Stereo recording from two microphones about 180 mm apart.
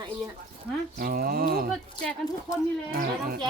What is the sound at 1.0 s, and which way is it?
Speech, 50° right (ahead or behind).